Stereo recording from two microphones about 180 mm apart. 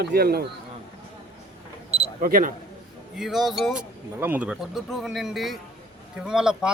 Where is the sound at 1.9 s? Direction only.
30° right (ahead or behind).